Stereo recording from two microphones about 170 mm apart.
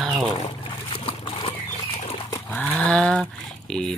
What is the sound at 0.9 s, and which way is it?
Boat, 30° left (ahead or behind).